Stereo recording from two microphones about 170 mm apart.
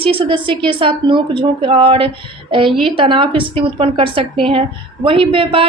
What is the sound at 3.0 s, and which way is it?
A woman's voice, 30° right (ahead or behind).